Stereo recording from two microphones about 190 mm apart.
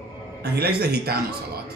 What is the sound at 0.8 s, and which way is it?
Speech, 55° right (ahead or behind).